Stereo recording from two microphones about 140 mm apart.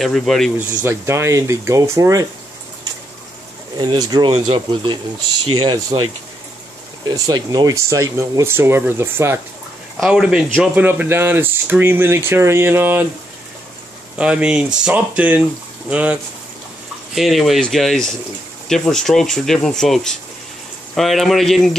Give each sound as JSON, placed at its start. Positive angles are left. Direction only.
{"t": 0.0, "sound": "speech", "side_deg": 0}
{"t": 0.8, "sound": "speech", "side_deg": -20}
{"t": 3.7, "sound": "speech", "side_deg": -30}
{"t": 7.1, "sound": "speech", "side_deg": -30}
{"t": 9.9, "sound": "speech", "side_deg": -5}
{"t": 14.1, "sound": "speech", "side_deg": -10}